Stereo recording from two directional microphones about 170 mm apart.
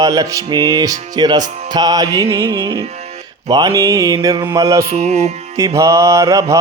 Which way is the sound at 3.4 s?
25° right (ahead or behind).